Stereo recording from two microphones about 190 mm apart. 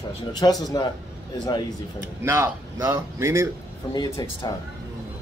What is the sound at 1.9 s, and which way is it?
Speech, 15° right (ahead or behind).